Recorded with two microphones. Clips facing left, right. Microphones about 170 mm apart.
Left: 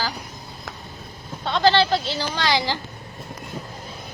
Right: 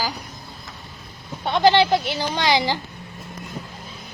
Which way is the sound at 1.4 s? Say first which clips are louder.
Right 2 dB; 15° right (ahead or behind).